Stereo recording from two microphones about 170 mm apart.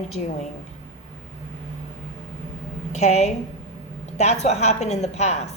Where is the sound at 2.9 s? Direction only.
40° left (ahead or behind).